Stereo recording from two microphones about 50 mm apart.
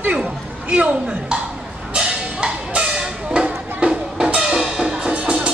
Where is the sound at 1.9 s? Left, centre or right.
Centre.